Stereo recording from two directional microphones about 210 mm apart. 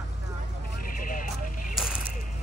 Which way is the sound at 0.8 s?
40° left (ahead or behind).